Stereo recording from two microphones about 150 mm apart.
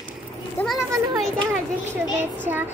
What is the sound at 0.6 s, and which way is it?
Children playing, 10° left (ahead or behind).